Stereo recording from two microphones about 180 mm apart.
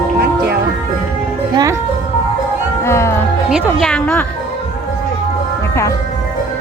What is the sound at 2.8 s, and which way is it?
Music, 15° left (ahead or behind).